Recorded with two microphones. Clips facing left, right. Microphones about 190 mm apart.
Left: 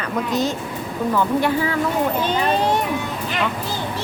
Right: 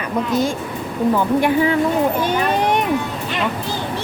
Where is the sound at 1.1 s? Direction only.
15° right (ahead or behind).